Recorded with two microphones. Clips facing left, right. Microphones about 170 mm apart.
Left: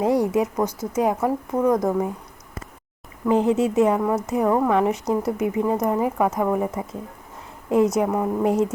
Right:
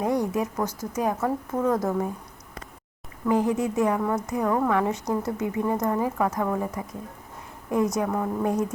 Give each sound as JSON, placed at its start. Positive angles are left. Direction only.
{"t": 0.0, "sound": "speech", "side_deg": 20}
{"t": 3.2, "sound": "speech", "side_deg": 25}